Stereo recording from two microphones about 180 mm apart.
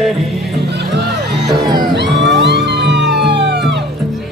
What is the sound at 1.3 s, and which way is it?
Music, centre (ahead or behind).